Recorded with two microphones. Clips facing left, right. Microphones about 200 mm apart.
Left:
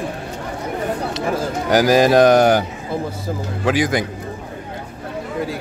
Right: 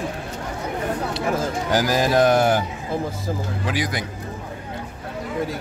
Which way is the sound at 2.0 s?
90° left.